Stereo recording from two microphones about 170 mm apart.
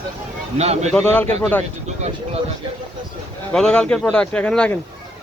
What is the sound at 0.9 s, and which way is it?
Speech, 5° left (ahead or behind).